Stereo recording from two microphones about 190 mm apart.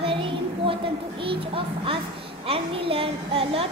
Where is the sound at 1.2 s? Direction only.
30° right (ahead or behind).